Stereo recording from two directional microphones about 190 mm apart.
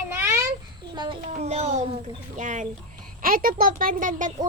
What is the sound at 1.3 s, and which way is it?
A child's voice, 35° right (ahead or behind).